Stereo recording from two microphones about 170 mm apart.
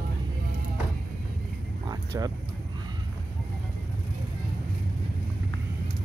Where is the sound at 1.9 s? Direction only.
20° right (ahead or behind).